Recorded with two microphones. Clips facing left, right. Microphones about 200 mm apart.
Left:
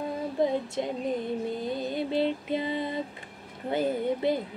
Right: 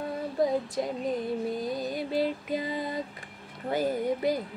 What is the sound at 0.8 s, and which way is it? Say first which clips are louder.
Music: even; 25° left (ahead or behind).